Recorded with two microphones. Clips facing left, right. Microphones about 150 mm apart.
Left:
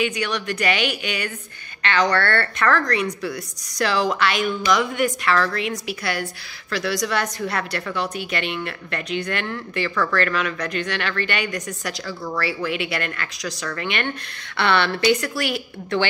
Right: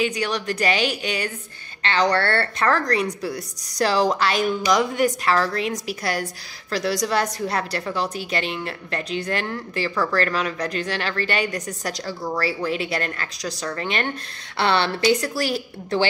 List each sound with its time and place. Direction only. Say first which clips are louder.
0.0 s a woman's voice: even; 35° right (ahead or behind)